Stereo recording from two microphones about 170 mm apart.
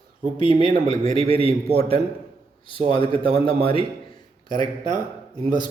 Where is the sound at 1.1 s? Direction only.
35° left (ahead or behind).